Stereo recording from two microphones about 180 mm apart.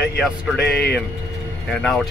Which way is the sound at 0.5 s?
65° left (ahead or behind).